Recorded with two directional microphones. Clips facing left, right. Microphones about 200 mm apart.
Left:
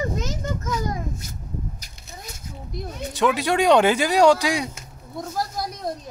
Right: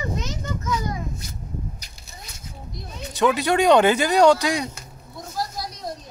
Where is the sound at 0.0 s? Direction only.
45° left (ahead or behind).